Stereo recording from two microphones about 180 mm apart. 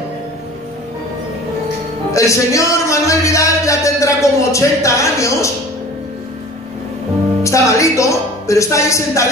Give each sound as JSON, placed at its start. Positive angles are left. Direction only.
{"t": 2.1, "sound": "speech", "side_deg": 15}
{"t": 7.4, "sound": "speech", "side_deg": 15}